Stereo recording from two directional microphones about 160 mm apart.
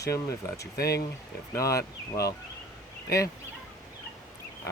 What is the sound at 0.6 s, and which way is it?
Speech, 80° left.